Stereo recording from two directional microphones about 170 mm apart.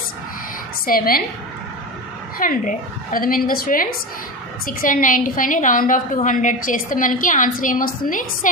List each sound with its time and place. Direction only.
0.9 s a woman's voice: 60° left (ahead or behind)
2.4 s a woman's voice: 55° left (ahead or behind)